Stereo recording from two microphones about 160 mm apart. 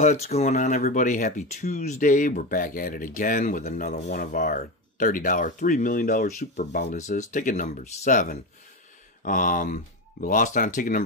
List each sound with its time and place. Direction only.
0.0 s speech: 45° left (ahead or behind)